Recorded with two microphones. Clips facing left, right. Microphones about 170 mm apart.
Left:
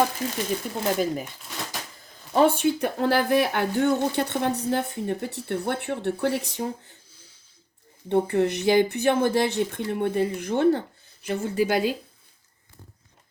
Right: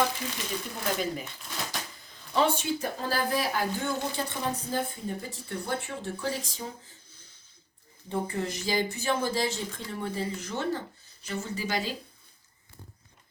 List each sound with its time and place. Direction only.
0.8 s speech: 45° left (ahead or behind)
2.3 s speech: 55° left (ahead or behind)
8.1 s speech: 65° left (ahead or behind)